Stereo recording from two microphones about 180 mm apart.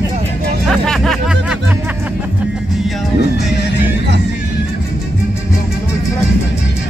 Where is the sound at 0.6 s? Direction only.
Centre (ahead or behind).